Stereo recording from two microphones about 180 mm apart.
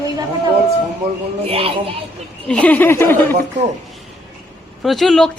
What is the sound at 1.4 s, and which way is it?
Speech, 30° right (ahead or behind).